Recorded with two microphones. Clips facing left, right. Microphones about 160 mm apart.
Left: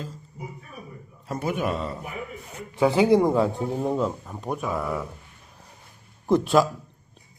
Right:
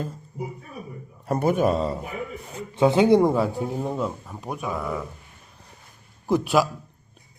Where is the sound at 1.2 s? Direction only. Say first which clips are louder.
Right 6 dB; 55° right (ahead or behind); by 2.0 s 35° right (ahead or behind).